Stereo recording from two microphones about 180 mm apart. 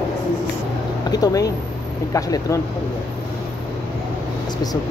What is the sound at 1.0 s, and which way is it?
Speech, 20° left (ahead or behind).